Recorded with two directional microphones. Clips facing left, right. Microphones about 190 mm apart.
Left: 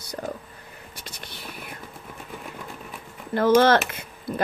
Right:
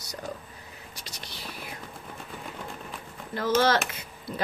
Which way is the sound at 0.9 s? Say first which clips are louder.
Left 2 dB; 55° left (ahead or behind).